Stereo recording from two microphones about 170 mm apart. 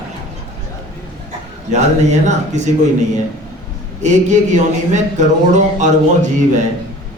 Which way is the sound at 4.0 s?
45° right (ahead or behind).